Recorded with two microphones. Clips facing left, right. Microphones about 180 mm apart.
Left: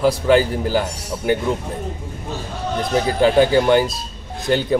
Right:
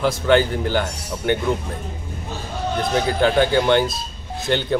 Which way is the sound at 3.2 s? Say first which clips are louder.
Left 4 dB; 5° left (ahead or behind).